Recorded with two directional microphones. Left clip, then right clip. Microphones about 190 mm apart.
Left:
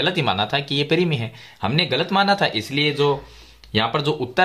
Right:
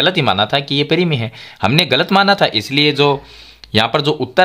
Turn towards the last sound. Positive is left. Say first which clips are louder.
# right 7 dB
turn(degrees=-30)  # may be behind; listen again after turning